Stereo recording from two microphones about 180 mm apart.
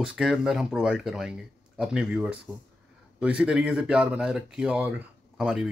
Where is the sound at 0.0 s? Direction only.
5° right (ahead or behind).